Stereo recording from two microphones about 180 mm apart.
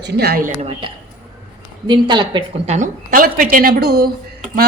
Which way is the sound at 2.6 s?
45° right (ahead or behind).